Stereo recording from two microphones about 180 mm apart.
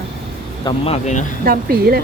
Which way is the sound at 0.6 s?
35° left (ahead or behind).